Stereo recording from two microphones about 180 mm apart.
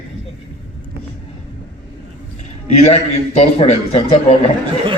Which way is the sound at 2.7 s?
35° left (ahead or behind).